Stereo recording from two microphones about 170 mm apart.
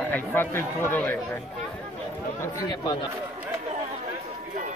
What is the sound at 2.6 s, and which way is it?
Speech, 25° left (ahead or behind).